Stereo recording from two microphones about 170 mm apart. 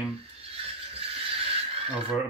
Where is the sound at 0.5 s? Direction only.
35° right (ahead or behind).